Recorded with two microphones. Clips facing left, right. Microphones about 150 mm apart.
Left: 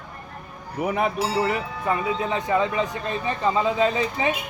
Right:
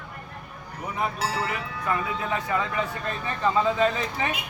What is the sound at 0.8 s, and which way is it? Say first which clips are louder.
Speech: left 6 dB; 75° left (ahead or behind).